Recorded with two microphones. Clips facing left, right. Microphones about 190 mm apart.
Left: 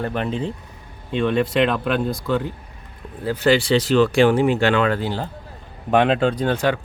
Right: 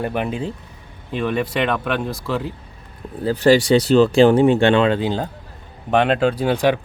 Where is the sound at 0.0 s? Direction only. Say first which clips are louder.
Right 1 dB; 10° right (ahead or behind).